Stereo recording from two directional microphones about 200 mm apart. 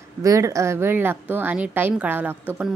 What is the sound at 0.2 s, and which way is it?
Speech, 15° right (ahead or behind).